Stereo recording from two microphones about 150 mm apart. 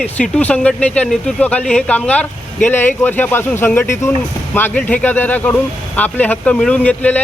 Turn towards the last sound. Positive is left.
turn(degrees=10)  # may be behind; listen again after turning